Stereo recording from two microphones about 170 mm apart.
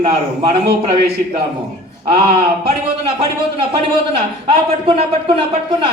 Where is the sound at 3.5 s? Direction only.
35° right (ahead or behind).